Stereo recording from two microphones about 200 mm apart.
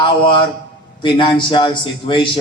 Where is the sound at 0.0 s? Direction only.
25° left (ahead or behind).